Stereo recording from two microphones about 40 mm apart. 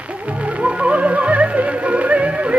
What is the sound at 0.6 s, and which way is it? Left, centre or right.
Music, right.